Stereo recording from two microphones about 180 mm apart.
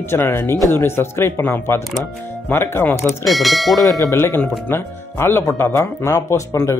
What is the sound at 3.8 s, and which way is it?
Speech, 20° left (ahead or behind).